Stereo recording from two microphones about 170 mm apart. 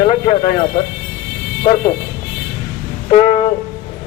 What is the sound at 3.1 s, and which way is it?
Music, 40° left (ahead or behind).